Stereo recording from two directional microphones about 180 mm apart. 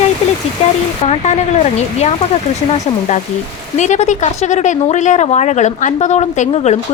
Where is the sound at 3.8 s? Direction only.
40° left (ahead or behind).